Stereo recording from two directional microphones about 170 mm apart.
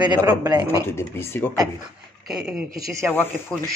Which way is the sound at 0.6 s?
15° left (ahead or behind).